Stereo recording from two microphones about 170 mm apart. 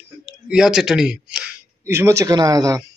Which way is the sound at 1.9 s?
15° right (ahead or behind).